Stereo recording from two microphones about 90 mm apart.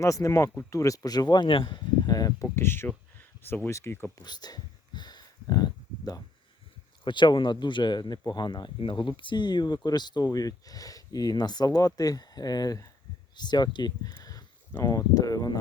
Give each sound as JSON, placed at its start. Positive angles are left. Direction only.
{"t": 0.0, "sound": "speech", "side_deg": 35}
{"t": 1.5, "sound": "speech", "side_deg": 70}
{"t": 2.0, "sound": "speech", "side_deg": 45}
{"t": 2.6, "sound": "speech", "side_deg": 25}
{"t": 4.2, "sound": "a sound", "side_deg": 50}
{"t": 7.0, "sound": "speech", "side_deg": 60}
{"t": 8.8, "sound": "speech", "side_deg": 70}
{"t": 13.3, "sound": "speech", "side_deg": 55}